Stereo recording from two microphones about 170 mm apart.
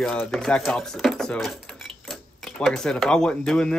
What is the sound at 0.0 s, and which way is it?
Speech, 5° left (ahead or behind).